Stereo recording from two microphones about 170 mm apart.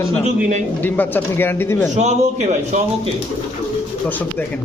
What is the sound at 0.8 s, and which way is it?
Speech, 10° left (ahead or behind).